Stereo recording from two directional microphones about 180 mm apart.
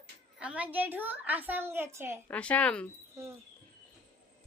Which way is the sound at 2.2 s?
5° left (ahead or behind).